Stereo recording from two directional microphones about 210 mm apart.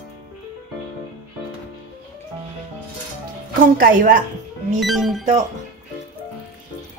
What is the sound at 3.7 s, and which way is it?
Speech, 40° right (ahead or behind).